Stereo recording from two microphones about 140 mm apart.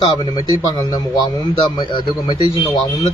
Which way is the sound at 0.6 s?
30° left (ahead or behind).